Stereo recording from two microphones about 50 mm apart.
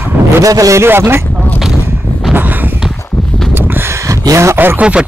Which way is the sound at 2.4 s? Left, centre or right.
Right.